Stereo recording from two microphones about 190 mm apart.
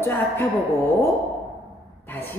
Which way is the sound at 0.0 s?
10° left (ahead or behind).